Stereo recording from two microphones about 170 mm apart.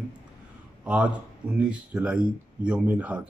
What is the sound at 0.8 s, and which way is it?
Speech, 5° right (ahead or behind).